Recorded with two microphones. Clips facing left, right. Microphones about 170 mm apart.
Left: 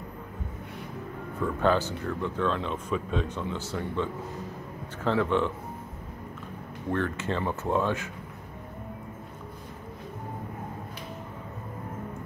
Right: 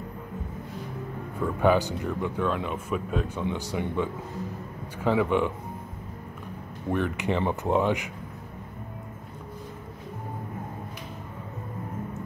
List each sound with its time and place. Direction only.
1.4 s speech: 10° right (ahead or behind)
6.9 s speech: 15° right (ahead or behind)